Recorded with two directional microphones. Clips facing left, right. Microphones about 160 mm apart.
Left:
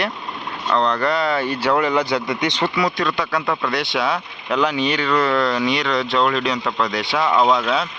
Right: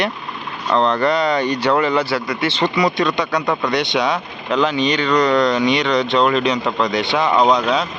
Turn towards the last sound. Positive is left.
turn(degrees=0)  # may be behind; listen again after turning